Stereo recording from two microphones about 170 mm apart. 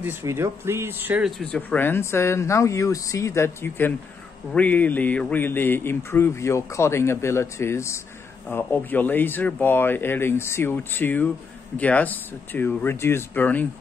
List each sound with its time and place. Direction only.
0.0 s speech: 15° right (ahead or behind)
1.4 s speech: 5° left (ahead or behind)